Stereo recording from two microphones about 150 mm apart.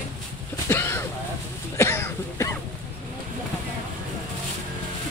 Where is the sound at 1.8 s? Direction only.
15° left (ahead or behind).